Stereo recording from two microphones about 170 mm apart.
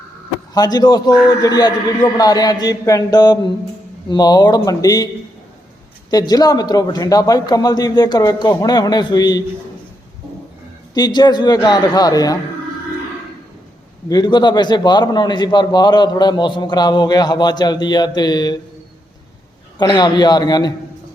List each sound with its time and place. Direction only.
0.5 s a man's voice: 25° left (ahead or behind)
6.1 s a man's voice: 20° left (ahead or behind)
10.9 s a man's voice: 25° left (ahead or behind)
14.1 s a man's voice: 25° left (ahead or behind)
19.8 s a man's voice: 25° left (ahead or behind)